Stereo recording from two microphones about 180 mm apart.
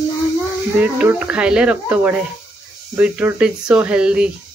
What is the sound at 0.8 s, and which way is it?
A child's voice, 10° right (ahead or behind).